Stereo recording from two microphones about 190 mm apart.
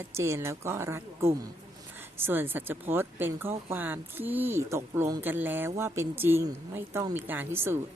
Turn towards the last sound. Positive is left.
turn(degrees=-10)  # may be behind; listen again after turning